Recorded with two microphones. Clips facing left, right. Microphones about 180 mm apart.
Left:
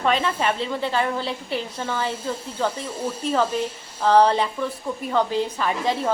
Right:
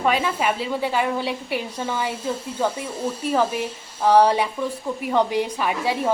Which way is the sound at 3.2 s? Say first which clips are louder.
Even; 10° right (ahead or behind).